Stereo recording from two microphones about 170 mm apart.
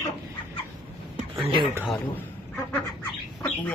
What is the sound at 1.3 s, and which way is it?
Music, 30° right (ahead or behind).